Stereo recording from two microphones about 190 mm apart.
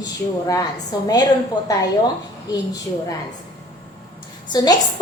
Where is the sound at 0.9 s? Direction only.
20° left (ahead or behind).